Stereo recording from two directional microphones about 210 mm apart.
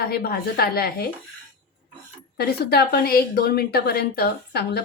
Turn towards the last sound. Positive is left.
turn(degrees=50)  # may be behind; listen again after turning